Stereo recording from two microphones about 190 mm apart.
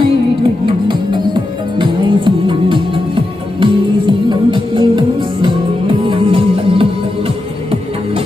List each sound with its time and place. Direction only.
0.0 s music: 25° right (ahead or behind)